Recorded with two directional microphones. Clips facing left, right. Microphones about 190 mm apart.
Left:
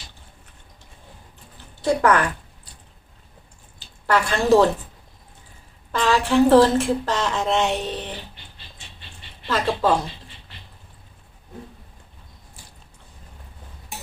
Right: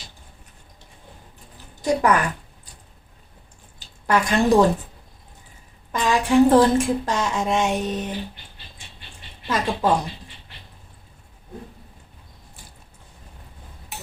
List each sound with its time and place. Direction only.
1.8 s speech: 10° right (ahead or behind)
4.0 s speech: 15° right (ahead or behind)
5.9 s speech: 15° right (ahead or behind)
9.5 s speech: 15° right (ahead or behind)